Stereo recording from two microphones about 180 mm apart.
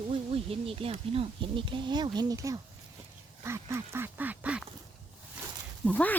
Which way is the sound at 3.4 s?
15° right (ahead or behind).